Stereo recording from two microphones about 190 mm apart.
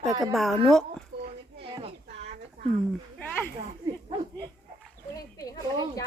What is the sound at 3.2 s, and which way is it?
Speech, 10° left (ahead or behind).